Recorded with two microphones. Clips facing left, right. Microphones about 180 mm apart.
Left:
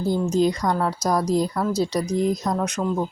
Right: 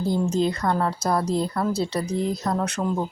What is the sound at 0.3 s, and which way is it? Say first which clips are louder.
Speech: left 3 dB; 15° left (ahead or behind).